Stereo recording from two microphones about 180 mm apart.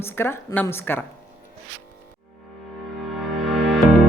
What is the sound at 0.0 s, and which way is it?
A woman's voice, 15° left (ahead or behind).